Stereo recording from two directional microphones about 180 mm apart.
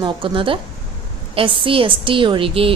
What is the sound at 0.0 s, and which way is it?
A woman's voice, 30° right (ahead or behind).